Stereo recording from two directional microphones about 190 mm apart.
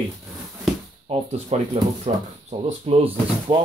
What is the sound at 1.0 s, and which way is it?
Speech, 30° right (ahead or behind).